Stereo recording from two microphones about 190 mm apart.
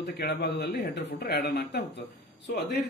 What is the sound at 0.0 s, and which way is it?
Speech, 60° left (ahead or behind).